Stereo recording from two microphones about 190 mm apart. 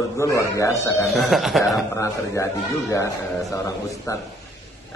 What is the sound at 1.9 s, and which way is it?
Speech, 15° left (ahead or behind).